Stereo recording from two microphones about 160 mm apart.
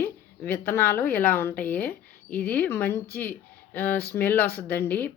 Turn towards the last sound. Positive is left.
turn(degrees=10)  # may be behind; listen again after turning